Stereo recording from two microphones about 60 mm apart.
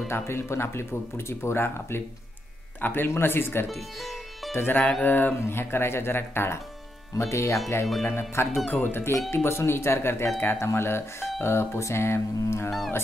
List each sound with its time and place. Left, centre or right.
0.1 s speech: left
7.2 s speech: left
8.0 s speech: left
8.6 s speech: left